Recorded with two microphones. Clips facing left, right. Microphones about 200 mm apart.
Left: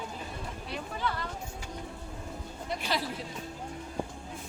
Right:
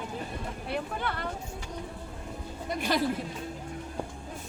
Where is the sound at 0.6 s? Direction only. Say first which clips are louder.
Right 2 dB; 60° right (ahead or behind).